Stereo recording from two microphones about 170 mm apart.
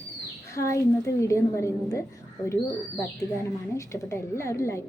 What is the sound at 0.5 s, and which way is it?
Child singing, 20° left (ahead or behind).